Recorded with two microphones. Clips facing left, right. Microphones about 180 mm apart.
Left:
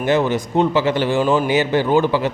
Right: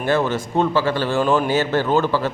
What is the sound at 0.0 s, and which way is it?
Speech, 20° left (ahead or behind).